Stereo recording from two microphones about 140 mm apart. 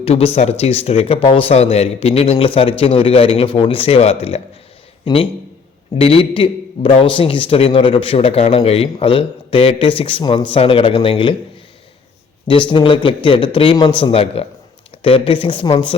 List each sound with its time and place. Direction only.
0.0 s a man's voice: 45° left (ahead or behind)
12.5 s a man's voice: 35° left (ahead or behind)